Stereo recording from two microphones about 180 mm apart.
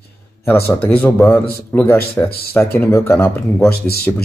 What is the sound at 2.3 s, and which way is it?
Speech, 60° left (ahead or behind).